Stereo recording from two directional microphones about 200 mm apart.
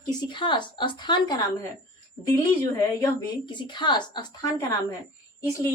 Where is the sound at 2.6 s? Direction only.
15° left (ahead or behind).